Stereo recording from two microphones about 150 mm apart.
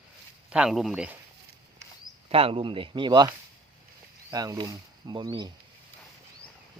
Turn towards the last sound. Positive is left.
turn(degrees=-25)  # may be behind; listen again after turning